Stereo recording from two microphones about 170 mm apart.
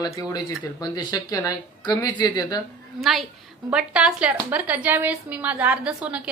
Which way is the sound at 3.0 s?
Centre (ahead or behind).